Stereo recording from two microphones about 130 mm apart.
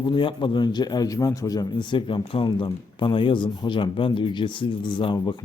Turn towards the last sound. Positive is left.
turn(degrees=35)  # may be behind; listen again after turning